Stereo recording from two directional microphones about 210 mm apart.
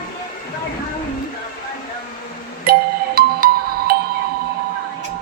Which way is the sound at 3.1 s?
45° right (ahead or behind).